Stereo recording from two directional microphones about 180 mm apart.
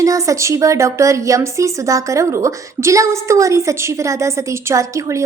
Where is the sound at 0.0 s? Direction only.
20° right (ahead or behind).